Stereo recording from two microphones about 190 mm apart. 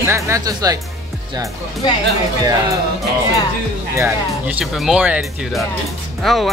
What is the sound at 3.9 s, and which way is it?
Speech, 10° right (ahead or behind).